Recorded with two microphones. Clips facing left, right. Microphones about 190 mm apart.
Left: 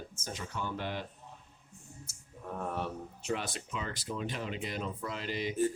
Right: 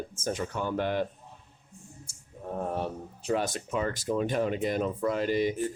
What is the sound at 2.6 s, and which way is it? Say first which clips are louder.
Speech: right 4 dB; 35° right (ahead or behind).